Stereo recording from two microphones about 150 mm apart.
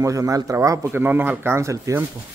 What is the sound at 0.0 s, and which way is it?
Speech, 20° right (ahead or behind).